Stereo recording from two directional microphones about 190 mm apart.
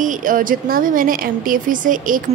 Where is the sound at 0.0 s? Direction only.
45° right (ahead or behind).